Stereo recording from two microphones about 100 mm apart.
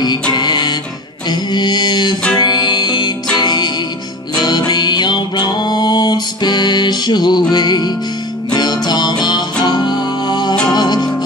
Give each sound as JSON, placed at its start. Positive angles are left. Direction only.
{"t": 0.3, "sound": "music", "side_deg": 45}
{"t": 1.3, "sound": "mantra", "side_deg": 45}
{"t": 2.3, "sound": "music", "side_deg": 45}